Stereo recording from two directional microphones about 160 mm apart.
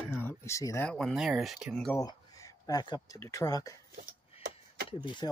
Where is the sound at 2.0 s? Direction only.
25° left (ahead or behind).